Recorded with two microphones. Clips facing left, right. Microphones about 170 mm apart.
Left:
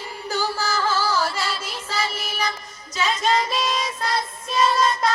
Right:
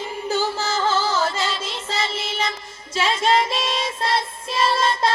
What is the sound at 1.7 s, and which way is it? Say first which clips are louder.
Child singing: right 1 dB; 25° right (ahead or behind).